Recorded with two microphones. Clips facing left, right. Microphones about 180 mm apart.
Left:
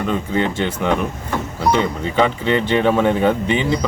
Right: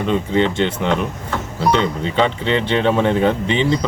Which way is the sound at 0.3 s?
5° left (ahead or behind).